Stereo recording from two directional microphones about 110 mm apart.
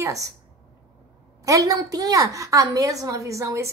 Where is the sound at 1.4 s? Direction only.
30° right (ahead or behind).